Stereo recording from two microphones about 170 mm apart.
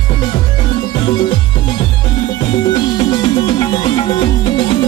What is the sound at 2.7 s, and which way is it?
Music, 25° left (ahead or behind).